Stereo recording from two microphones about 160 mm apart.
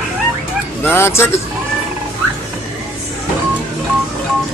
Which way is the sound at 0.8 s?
15° left (ahead or behind).